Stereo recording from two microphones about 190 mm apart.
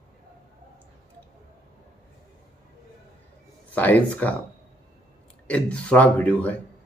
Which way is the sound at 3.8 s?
10° left (ahead or behind).